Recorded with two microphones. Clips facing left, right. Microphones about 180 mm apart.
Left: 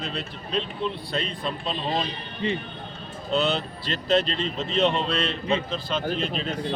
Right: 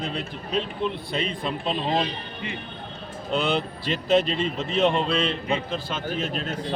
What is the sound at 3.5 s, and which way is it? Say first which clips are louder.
A man's voice: right 3 dB; 10° right (ahead or behind).